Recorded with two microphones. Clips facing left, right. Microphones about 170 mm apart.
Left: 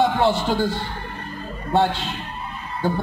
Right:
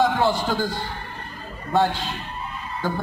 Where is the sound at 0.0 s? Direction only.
25° left (ahead or behind).